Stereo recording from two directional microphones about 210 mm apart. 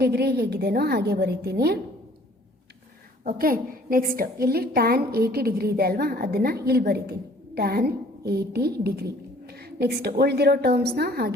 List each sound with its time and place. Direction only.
0.0 s a woman's voice: 50° right (ahead or behind)
3.2 s a woman's voice: 45° right (ahead or behind)